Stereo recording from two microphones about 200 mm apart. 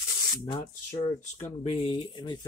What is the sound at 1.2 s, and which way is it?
Speech, 30° left (ahead or behind).